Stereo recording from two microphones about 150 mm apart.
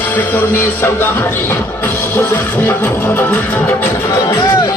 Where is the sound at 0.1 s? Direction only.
15° left (ahead or behind).